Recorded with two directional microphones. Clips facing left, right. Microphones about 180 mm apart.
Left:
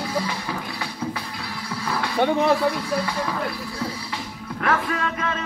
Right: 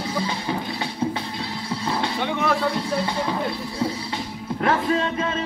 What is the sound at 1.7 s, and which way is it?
Music, 25° right (ahead or behind).